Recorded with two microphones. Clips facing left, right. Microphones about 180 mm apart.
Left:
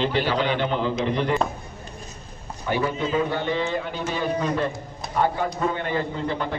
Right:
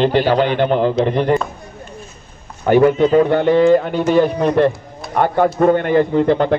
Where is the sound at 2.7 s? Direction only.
60° right (ahead or behind).